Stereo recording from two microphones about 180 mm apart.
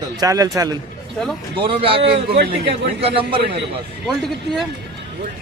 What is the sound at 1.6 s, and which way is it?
A man's voice, 30° right (ahead or behind).